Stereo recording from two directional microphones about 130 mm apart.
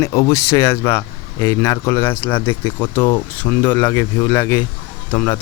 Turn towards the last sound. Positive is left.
turn(degrees=10)  # may be behind; listen again after turning